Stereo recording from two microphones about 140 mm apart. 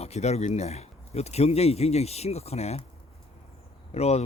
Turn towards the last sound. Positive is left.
turn(degrees=50)  # may be behind; listen again after turning